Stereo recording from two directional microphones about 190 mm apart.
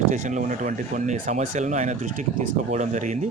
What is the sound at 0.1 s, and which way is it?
Speech, 40° right (ahead or behind).